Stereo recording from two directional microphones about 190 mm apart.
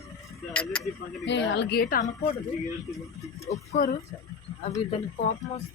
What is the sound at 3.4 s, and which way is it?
Speech, 35° left (ahead or behind).